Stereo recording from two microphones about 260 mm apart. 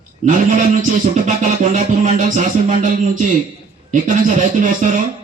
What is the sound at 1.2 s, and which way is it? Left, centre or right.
Music, right.